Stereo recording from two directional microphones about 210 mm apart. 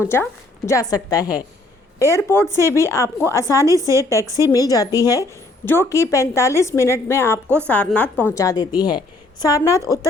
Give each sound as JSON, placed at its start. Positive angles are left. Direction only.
{"t": 0.0, "sound": "a woman's voice", "side_deg": 10}
{"t": 3.6, "sound": "a woman's voice", "side_deg": -15}
{"t": 4.5, "sound": "a woman's voice", "side_deg": 15}